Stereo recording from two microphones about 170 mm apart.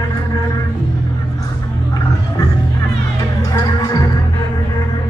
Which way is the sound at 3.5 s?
20° left (ahead or behind).